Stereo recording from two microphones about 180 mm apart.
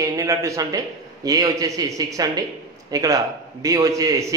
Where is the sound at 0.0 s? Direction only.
20° right (ahead or behind).